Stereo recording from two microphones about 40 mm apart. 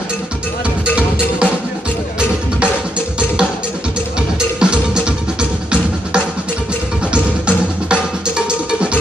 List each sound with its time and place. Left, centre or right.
0.9 s music: right
4.6 s music: right